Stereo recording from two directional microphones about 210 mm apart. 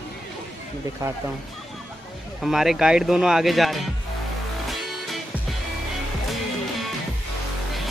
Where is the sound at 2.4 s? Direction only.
Centre (ahead or behind).